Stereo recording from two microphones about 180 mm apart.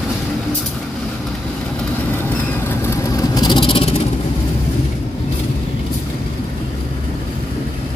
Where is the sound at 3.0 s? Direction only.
20° left (ahead or behind).